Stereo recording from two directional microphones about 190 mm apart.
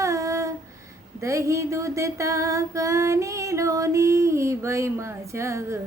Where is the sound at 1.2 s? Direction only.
15° right (ahead or behind).